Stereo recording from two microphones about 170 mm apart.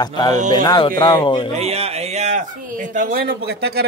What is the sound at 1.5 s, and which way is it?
A man's voice, 40° right (ahead or behind).